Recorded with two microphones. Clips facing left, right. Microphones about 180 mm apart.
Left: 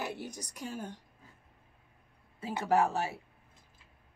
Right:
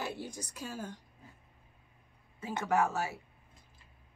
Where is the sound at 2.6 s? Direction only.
30° left (ahead or behind).